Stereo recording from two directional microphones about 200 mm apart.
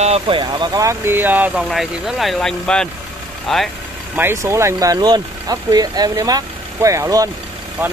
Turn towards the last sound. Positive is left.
turn(degrees=-15)  # may be behind; listen again after turning